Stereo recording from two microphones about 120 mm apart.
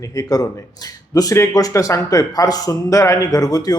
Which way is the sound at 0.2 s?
30° left (ahead or behind).